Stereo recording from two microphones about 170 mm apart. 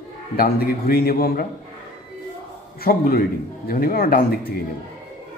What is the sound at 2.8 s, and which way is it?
Speech, 60° left (ahead or behind).